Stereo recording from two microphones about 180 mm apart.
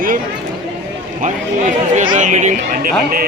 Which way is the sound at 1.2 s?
40° right (ahead or behind).